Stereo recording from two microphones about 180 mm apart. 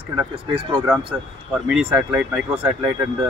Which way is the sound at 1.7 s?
5° right (ahead or behind).